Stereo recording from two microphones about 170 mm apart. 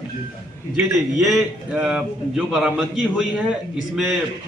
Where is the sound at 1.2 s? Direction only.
5° right (ahead or behind).